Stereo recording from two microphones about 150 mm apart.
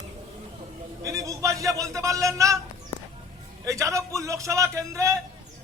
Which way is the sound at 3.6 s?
20° right (ahead or behind).